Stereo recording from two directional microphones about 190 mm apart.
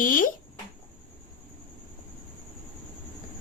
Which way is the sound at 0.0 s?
45° left (ahead or behind).